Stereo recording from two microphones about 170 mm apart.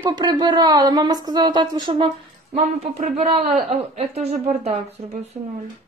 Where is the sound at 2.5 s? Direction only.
40° right (ahead or behind).